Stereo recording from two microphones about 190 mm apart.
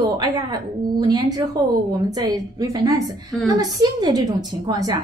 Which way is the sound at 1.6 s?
20° right (ahead or behind).